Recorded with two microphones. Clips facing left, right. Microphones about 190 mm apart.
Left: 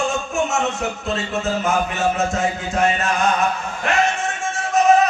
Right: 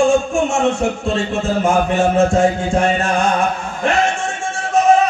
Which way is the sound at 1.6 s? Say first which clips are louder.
Right 7 dB; 30° right (ahead or behind).